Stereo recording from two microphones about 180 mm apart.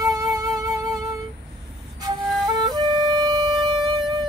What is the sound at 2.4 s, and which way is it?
Wind instrument, 25° right (ahead or behind).